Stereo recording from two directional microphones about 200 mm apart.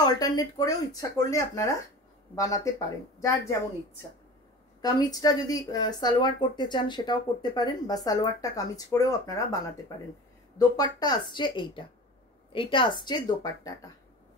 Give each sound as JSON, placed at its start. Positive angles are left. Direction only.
{"t": 0.0, "sound": "a woman's voice", "side_deg": 20}
{"t": 10.8, "sound": "speech", "side_deg": 20}